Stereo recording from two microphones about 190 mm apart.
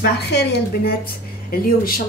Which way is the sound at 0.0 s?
65° left (ahead or behind).